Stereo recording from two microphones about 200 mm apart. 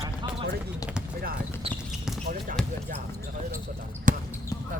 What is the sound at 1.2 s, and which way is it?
Basketball bounce, 45° right (ahead or behind).